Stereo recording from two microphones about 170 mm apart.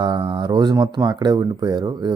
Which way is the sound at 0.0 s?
30° right (ahead or behind).